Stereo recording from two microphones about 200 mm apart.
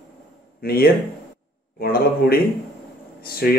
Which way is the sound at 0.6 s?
50° left (ahead or behind).